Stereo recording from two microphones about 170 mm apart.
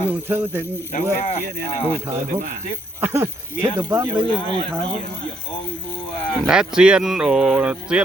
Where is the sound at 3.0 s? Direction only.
15° right (ahead or behind).